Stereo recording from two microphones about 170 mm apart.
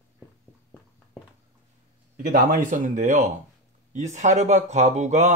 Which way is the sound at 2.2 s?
55° right (ahead or behind).